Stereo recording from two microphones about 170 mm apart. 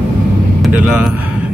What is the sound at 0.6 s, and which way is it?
Speech, 10° right (ahead or behind).